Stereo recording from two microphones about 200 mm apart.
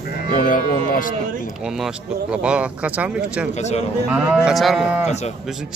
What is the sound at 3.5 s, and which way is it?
Speech, 35° left (ahead or behind).